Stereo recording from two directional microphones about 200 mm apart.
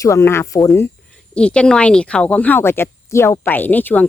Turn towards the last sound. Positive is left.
turn(degrees=10)  # may be behind; listen again after turning